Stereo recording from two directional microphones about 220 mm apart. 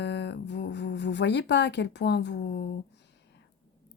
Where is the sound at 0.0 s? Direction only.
50° left (ahead or behind).